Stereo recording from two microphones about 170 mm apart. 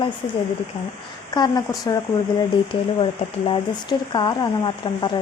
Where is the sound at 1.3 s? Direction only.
25° left (ahead or behind).